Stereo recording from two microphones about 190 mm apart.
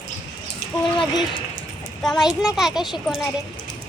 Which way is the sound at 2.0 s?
Centre (ahead or behind).